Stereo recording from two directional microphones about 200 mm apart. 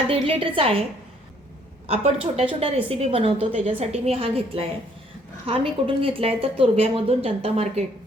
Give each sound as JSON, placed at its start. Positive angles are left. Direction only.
{"t": 0.1, "sound": "a woman's voice", "side_deg": -25}
{"t": 1.9, "sound": "a woman's voice", "side_deg": -30}